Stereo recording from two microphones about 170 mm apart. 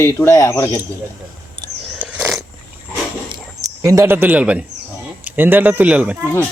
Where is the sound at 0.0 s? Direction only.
15° left (ahead or behind).